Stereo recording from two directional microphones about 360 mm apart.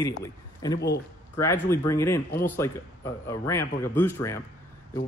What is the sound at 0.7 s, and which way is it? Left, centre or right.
Speech, left.